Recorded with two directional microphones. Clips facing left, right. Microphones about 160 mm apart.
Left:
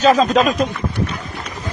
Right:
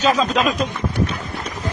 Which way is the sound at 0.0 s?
40° left (ahead or behind).